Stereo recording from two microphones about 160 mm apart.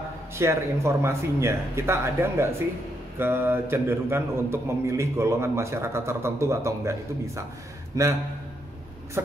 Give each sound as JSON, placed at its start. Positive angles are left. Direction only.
{"t": 0.4, "sound": "a man's voice", "side_deg": -15}